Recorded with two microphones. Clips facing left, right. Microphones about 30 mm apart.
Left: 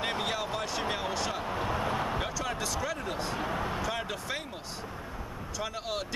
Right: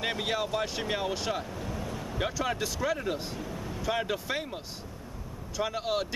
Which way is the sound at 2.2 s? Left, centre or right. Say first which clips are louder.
Right 2 dB; centre.